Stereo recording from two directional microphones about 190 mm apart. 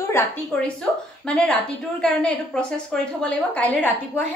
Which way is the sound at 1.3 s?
5° left (ahead or behind).